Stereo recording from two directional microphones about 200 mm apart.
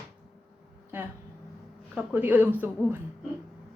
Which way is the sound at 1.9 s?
10° right (ahead or behind).